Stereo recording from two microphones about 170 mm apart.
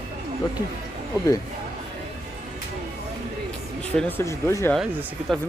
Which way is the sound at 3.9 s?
5° left (ahead or behind).